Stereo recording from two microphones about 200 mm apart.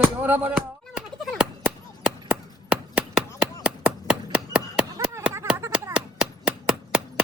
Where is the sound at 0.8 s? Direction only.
Centre (ahead or behind).